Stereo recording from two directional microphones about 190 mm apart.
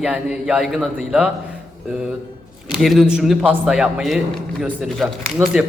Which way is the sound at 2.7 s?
Centre (ahead or behind).